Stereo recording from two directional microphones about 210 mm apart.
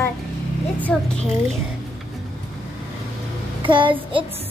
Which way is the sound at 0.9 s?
5° left (ahead or behind).